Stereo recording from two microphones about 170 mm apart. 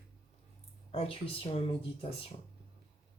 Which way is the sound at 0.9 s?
35° left (ahead or behind).